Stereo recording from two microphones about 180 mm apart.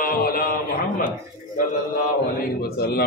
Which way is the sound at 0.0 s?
55° left (ahead or behind).